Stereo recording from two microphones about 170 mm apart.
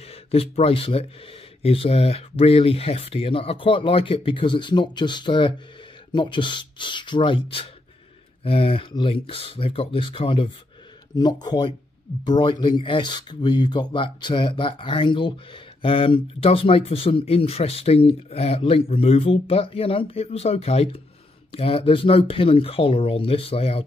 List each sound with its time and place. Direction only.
0.0 s speech: 35° left (ahead or behind)